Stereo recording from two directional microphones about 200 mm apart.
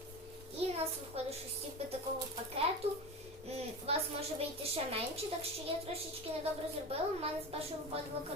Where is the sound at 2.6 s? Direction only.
30° right (ahead or behind).